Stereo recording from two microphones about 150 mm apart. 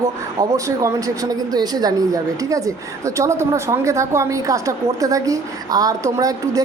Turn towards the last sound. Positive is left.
turn(degrees=-25)  # may be behind; listen again after turning